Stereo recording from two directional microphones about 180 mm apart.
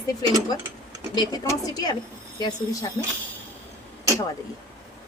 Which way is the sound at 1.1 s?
20° left (ahead or behind).